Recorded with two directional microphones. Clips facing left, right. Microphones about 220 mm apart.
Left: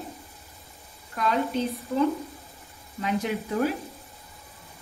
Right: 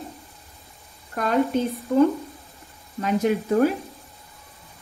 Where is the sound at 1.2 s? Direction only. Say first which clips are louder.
Right 1 dB; 50° right (ahead or behind).